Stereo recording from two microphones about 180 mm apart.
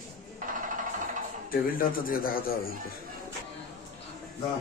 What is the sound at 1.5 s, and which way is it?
Speech, 50° left (ahead or behind).